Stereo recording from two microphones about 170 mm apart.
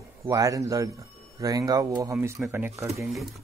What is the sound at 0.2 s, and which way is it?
Speech, 20° right (ahead or behind).